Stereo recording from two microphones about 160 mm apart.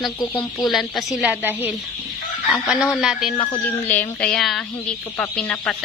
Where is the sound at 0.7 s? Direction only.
Centre (ahead or behind).